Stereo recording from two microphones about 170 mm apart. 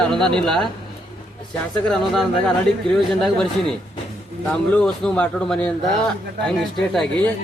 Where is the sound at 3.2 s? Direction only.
5° left (ahead or behind).